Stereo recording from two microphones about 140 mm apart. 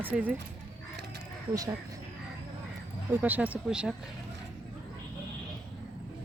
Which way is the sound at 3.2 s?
10° right (ahead or behind).